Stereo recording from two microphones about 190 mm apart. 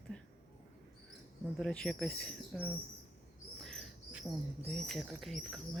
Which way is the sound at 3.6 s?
Centre (ahead or behind).